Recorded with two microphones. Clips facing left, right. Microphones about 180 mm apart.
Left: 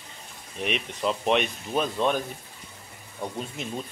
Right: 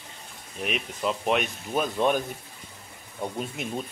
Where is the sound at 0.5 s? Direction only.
Centre (ahead or behind).